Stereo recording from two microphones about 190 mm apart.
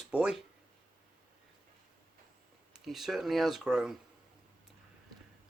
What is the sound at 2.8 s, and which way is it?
Speech, centre (ahead or behind).